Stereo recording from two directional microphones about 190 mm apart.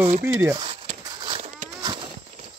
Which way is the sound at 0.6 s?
25° right (ahead or behind).